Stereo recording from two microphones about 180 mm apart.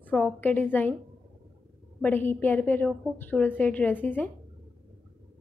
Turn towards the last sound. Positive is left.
turn(degrees=10)  # may be behind; listen again after turning